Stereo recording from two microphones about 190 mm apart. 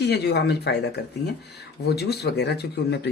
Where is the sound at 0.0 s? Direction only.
60° left (ahead or behind).